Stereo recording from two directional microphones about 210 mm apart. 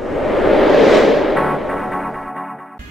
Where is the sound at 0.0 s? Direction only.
Centre (ahead or behind).